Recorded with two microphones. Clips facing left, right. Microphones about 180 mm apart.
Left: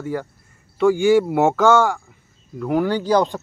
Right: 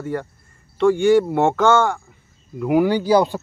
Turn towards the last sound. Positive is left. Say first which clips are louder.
# right 2 dB
turn(degrees=-10)  # may be behind; listen again after turning